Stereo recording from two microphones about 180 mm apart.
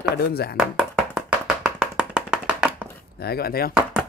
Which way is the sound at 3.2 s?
60° left (ahead or behind).